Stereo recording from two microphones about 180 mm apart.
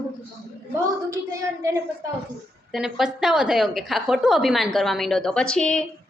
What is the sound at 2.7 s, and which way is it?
A woman's voice, 5° right (ahead or behind).